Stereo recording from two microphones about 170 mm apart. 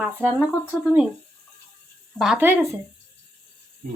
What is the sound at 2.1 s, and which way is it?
Speech, centre (ahead or behind).